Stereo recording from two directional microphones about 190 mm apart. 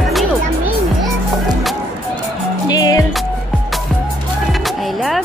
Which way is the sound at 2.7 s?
20° left (ahead or behind).